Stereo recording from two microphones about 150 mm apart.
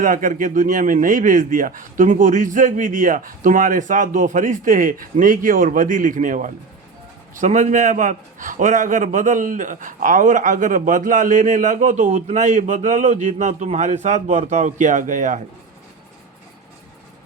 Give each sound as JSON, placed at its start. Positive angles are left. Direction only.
{"t": 0.0, "sound": "a man's voice", "side_deg": -60}